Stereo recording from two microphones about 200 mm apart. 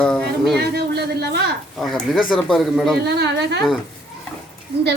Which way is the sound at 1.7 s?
Centre (ahead or behind).